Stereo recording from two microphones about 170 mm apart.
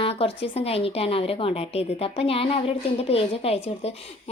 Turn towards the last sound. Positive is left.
turn(degrees=35)  # may be behind; listen again after turning